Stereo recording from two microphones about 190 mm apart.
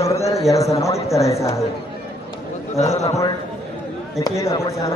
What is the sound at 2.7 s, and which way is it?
Speech, 35° left (ahead or behind).